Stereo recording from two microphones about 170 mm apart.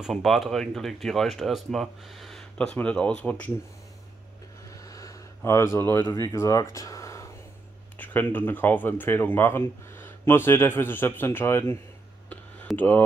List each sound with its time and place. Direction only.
0.0 s speech: centre (ahead or behind)
4.8 s a sound: 20° left (ahead or behind)
8.0 s speech: 10° left (ahead or behind)
12.3 s clicking: 10° left (ahead or behind)